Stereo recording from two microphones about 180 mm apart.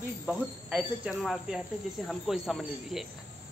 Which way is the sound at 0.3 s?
5° right (ahead or behind).